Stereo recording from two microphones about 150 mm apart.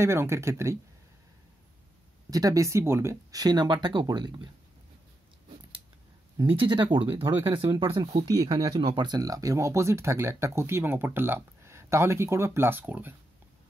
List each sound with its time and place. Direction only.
0.0 s speech: 15° right (ahead or behind)
2.3 s speech: 20° right (ahead or behind)
6.5 s speech: 35° right (ahead or behind)
7.0 s speech: 15° right (ahead or behind)
7.7 s speech: 25° right (ahead or behind)